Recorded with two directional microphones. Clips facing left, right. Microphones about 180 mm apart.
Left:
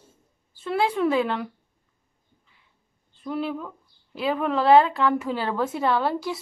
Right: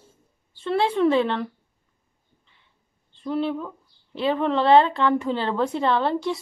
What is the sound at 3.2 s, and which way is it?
Speech, 5° left (ahead or behind).